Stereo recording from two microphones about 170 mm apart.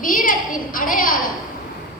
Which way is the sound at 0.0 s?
55° left (ahead or behind).